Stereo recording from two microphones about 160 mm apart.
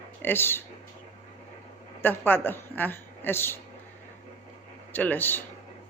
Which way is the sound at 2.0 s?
10° left (ahead or behind).